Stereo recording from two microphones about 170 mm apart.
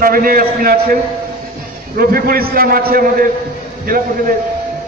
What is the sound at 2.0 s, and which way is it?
A man's voice, 60° right (ahead or behind).